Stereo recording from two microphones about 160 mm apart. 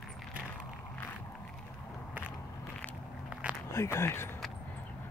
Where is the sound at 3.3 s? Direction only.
5° right (ahead or behind).